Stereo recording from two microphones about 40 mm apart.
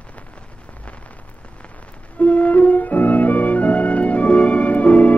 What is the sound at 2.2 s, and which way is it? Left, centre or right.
Music, left.